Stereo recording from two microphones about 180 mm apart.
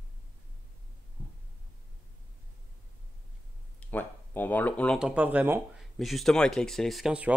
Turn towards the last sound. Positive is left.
turn(degrees=-5)  # may be behind; listen again after turning